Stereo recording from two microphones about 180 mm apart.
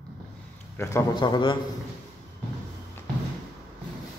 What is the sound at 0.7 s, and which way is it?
Speech, 15° left (ahead or behind).